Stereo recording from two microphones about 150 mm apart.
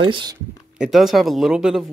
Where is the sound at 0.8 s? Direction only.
Centre (ahead or behind).